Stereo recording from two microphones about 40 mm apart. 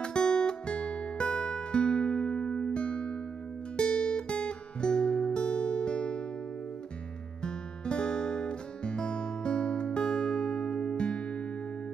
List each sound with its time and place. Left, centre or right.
0.0 s music: left
7.4 s guitar: left